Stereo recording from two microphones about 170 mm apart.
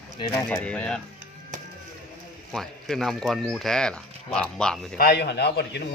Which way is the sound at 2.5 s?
Centre (ahead or behind).